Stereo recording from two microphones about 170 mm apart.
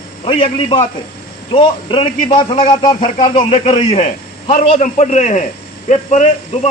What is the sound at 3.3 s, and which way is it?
A man's voice, 40° left (ahead or behind).